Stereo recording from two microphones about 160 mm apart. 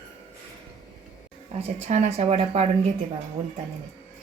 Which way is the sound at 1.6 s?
45° right (ahead or behind).